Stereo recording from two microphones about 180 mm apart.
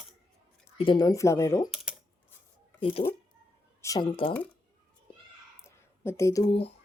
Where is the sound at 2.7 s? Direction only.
30° left (ahead or behind).